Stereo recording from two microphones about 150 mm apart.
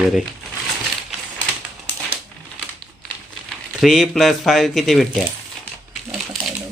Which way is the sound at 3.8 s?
Centre (ahead or behind).